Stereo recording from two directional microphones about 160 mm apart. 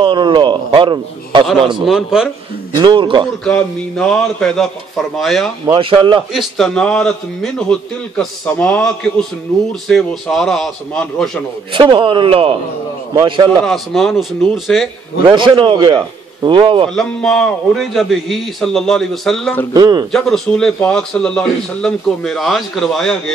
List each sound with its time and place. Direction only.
0.0 s a man's voice: 30° right (ahead or behind)
1.9 s a man's voice: 5° right (ahead or behind)
2.8 s a man's voice: 30° right (ahead or behind)
3.4 s a man's voice: 5° left (ahead or behind)
5.7 s speech: 35° right (ahead or behind)
6.3 s a man's voice: centre (ahead or behind)
11.7 s a man's voice: 30° right (ahead or behind)
13.7 s a man's voice: centre (ahead or behind)
15.2 s a man's voice: 30° right (ahead or behind)
16.9 s a man's voice: centre (ahead or behind)
19.7 s a man's voice: 25° right (ahead or behind)
20.1 s a man's voice: 5° left (ahead or behind)